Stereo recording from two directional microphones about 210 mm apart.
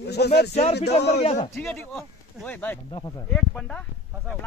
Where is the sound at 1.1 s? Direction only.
30° left (ahead or behind).